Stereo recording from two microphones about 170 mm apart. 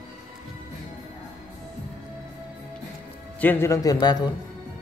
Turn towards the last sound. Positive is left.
turn(degrees=25)  # may be behind; listen again after turning